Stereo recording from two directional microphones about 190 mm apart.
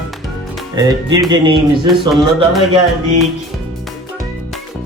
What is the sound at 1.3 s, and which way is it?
Speech, 25° right (ahead or behind).